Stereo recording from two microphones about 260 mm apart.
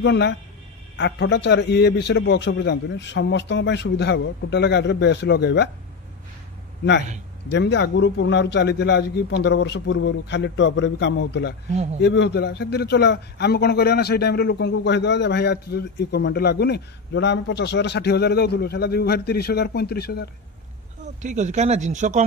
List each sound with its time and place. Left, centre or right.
0.0 s a man's voice: left
7.4 s a man's voice: left
11.7 s speech: right
12.0 s a man's voice: left
21.2 s speech: right